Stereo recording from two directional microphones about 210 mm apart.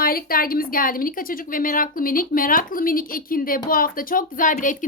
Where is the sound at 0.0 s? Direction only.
45° left (ahead or behind).